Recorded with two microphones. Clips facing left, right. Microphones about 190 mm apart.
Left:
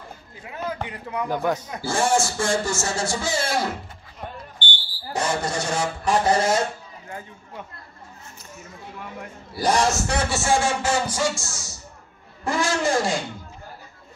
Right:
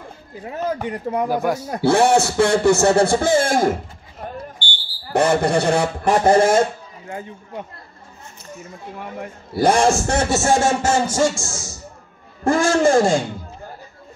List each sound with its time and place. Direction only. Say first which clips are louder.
0.4 s speech: right 6 dB; 40° right (ahead or behind)
1.3 s speech: right 3 dB; 10° right (ahead or behind)
1.8 s speech: right 9 dB; 65° right (ahead or behind); by 3.7 s 50° right (ahead or behind)
5.1 s speech: right 9 dB; 60° right (ahead or behind)
9.5 s speech: right 6 dB; 55° right (ahead or behind)